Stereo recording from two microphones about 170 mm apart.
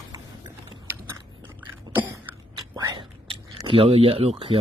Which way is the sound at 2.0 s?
10° right (ahead or behind).